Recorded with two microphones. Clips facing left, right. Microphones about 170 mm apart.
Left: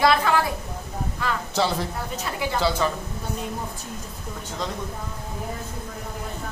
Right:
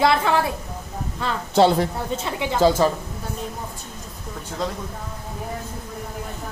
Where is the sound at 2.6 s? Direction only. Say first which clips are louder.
Right 7 dB; 40° right (ahead or behind).